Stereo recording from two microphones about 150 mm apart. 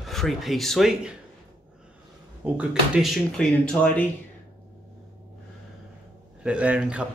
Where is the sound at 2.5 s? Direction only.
5° right (ahead or behind).